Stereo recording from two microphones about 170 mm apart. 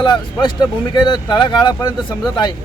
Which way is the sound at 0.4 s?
25° left (ahead or behind).